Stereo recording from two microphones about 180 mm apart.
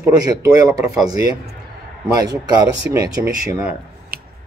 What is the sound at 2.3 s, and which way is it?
Speech, 20° right (ahead or behind).